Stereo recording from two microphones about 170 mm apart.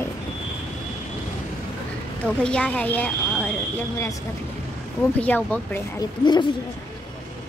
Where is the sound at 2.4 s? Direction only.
5° left (ahead or behind).